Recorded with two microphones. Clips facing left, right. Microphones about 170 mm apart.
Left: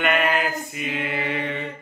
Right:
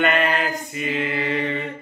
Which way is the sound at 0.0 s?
5° left (ahead or behind).